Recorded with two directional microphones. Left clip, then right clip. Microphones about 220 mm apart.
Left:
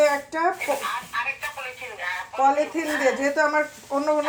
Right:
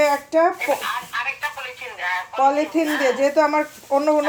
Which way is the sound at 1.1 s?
10° left (ahead or behind).